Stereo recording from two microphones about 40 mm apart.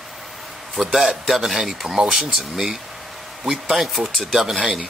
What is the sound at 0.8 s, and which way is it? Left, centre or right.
A man's voice, centre.